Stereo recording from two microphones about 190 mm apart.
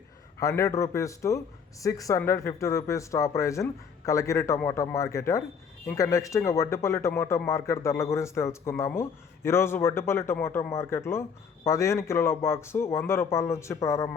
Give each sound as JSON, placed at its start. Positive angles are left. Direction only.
{"t": 0.3, "sound": "speech", "side_deg": 15}